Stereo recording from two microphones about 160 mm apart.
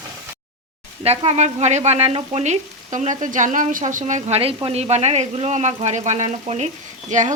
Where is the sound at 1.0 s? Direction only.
40° right (ahead or behind).